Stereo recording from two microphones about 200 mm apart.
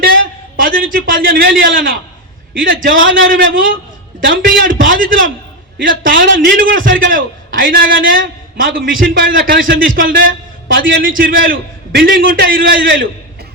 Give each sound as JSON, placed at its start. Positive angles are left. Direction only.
{"t": 0.0, "sound": "a man's voice", "side_deg": -45}